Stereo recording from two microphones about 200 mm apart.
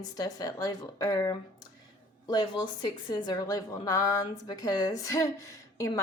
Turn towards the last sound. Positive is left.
turn(degrees=15)  # may be behind; listen again after turning